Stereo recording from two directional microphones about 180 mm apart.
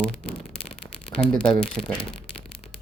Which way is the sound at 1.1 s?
5° left (ahead or behind).